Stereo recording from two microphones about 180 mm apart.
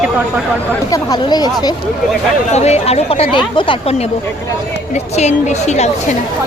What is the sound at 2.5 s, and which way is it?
Speech, 35° left (ahead or behind).